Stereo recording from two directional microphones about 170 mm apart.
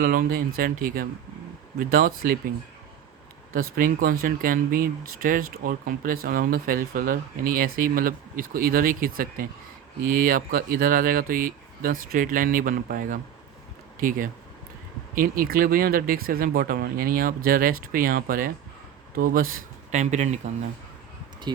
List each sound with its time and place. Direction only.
0.0 s speech: 55° right (ahead or behind)
3.5 s speech: 55° right (ahead or behind)
21.5 s speech: 25° right (ahead or behind)